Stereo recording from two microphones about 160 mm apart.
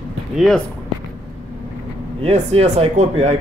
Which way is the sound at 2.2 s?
40° right (ahead or behind).